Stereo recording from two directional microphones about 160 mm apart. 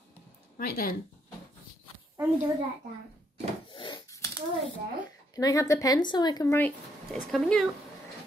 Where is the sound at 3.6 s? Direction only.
30° left (ahead or behind).